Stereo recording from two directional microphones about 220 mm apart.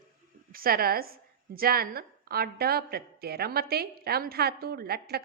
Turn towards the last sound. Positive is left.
turn(degrees=-45)  # may be behind; listen again after turning